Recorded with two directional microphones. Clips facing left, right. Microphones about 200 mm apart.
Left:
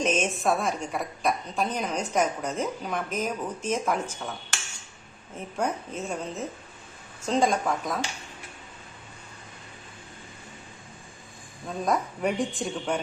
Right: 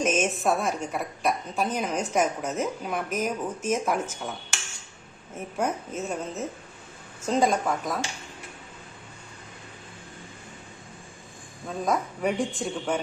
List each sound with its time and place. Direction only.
0.0 s a woman's voice: 5° right (ahead or behind)
5.5 s a woman's voice: 5° right (ahead or behind)
11.9 s a woman's voice: centre (ahead or behind)